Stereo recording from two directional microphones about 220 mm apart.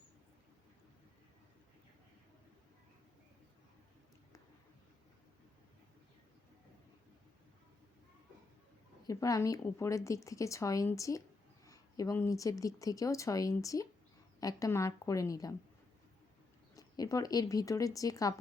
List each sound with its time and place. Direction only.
9.0 s speech: 15° left (ahead or behind)
16.7 s speech: 15° left (ahead or behind)